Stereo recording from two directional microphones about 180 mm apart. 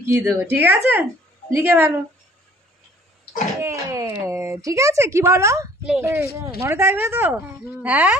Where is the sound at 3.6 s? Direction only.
15° right (ahead or behind).